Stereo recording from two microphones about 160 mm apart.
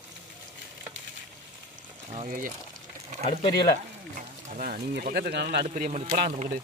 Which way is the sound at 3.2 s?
35° left (ahead or behind).